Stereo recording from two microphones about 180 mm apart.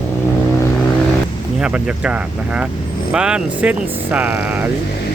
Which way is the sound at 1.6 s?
5° right (ahead or behind).